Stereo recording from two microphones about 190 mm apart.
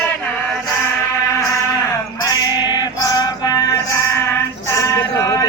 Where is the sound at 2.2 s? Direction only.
20° left (ahead or behind).